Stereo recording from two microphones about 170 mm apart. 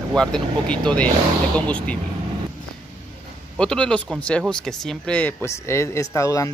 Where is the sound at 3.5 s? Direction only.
5° left (ahead or behind).